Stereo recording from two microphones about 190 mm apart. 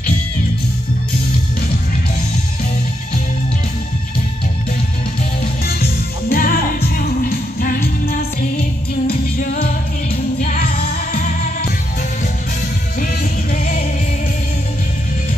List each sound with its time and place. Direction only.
5.7 s music: 50° left (ahead or behind)
13.0 s music: 45° left (ahead or behind)